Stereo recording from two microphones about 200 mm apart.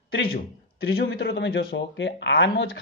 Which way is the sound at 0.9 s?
55° left (ahead or behind).